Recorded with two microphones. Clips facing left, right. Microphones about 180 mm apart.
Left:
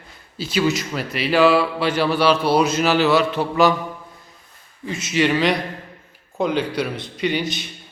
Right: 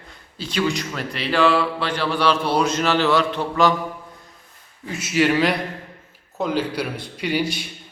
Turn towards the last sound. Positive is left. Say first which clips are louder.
# left 1 dB
turn(degrees=-10)  # may be behind; listen again after turning